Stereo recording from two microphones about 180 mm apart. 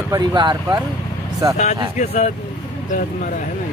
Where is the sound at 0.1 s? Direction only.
25° right (ahead or behind).